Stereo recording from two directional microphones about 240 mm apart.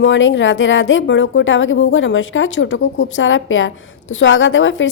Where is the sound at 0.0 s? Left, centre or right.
Left.